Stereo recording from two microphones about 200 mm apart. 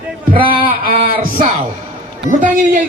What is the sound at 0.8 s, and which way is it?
Music, 45° right (ahead or behind).